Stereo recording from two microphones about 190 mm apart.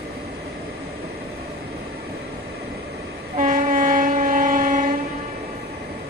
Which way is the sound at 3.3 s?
45° right (ahead or behind).